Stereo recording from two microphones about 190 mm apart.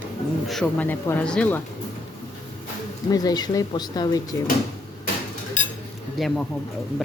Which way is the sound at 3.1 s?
20° left (ahead or behind).